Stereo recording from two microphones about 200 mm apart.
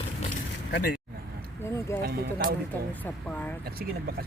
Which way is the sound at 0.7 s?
50° left (ahead or behind).